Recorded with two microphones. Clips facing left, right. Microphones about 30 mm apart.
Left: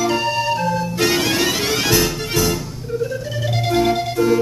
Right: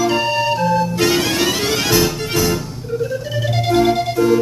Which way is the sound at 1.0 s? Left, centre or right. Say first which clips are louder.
Right 1 dB; centre.